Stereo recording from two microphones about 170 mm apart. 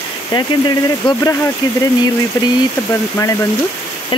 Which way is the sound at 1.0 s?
25° left (ahead or behind).